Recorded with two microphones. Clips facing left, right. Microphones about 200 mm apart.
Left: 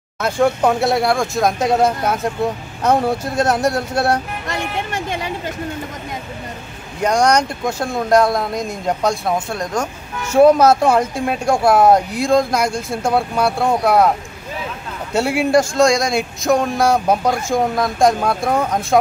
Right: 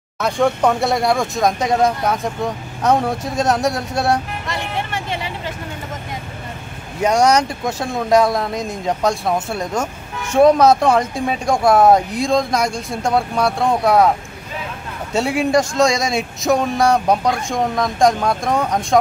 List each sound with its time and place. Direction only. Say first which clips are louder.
0.2 s speech: left 1 dB; 5° left (ahead or behind)
4.5 s a sound: left 2 dB; 45° left (ahead or behind)
7.0 s speech: right 1 dB; 5° right (ahead or behind)
15.1 s speech: left 1 dB; centre (ahead or behind)